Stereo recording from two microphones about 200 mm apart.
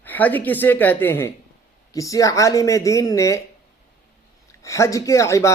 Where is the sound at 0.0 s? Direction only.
10° left (ahead or behind).